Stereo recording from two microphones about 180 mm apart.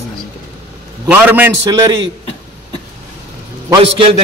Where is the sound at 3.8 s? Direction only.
30° right (ahead or behind).